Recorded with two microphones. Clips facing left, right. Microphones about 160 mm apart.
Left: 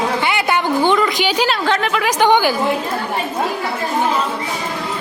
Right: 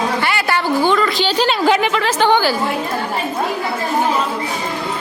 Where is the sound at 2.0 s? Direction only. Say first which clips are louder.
Left 1 dB; 15° left (ahead or behind).